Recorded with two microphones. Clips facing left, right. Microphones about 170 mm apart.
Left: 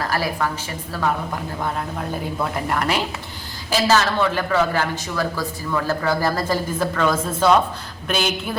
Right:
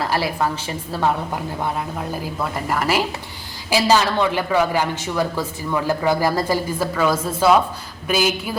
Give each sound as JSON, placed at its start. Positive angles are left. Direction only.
{"t": 0.1, "sound": "a woman's voice", "side_deg": -25}
{"t": 2.0, "sound": "a woman's voice", "side_deg": -5}
{"t": 3.7, "sound": "a man's voice", "side_deg": -15}